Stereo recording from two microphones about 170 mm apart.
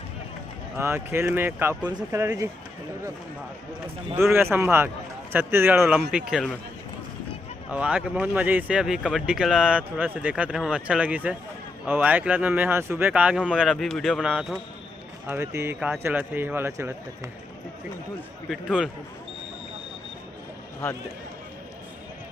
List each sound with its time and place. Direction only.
0.8 s speech: 15° right (ahead or behind)
4.1 s speech: 15° right (ahead or behind)
7.7 s speech: 5° right (ahead or behind)
18.4 s speech: centre (ahead or behind)